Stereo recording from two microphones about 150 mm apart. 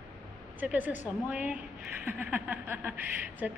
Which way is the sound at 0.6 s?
10° right (ahead or behind).